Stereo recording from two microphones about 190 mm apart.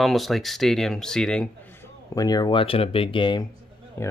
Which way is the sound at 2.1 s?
20° left (ahead or behind).